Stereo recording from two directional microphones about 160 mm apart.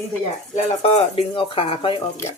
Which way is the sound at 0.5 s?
40° left (ahead or behind).